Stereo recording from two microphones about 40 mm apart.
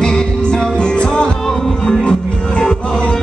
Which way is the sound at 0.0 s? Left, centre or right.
Centre.